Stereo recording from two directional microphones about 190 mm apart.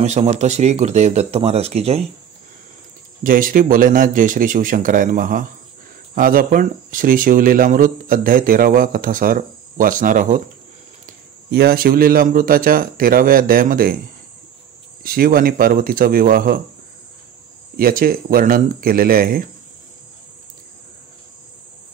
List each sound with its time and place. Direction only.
0.0 s speech: 35° right (ahead or behind)
3.3 s speech: 45° right (ahead or behind)
15.0 s speech: 50° right (ahead or behind)
17.7 s speech: 50° right (ahead or behind)